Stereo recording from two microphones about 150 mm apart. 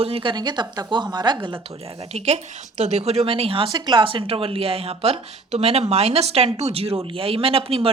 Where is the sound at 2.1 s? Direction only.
45° right (ahead or behind).